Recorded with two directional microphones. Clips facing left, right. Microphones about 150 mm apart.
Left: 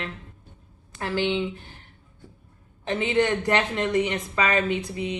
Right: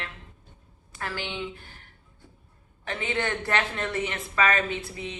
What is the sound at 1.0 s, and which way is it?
Speech, 20° left (ahead or behind).